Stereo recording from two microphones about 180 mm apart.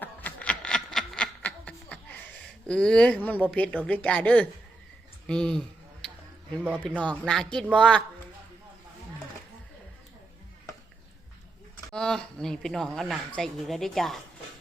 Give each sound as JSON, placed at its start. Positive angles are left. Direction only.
{"t": 0.0, "sound": "a sound", "side_deg": 10}
{"t": 5.2, "sound": "speech", "side_deg": 5}
{"t": 6.8, "sound": "speech", "side_deg": 5}
{"t": 11.9, "sound": "speech", "side_deg": 5}